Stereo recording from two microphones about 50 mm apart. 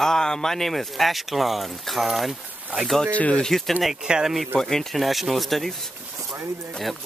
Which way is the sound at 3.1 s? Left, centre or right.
Left.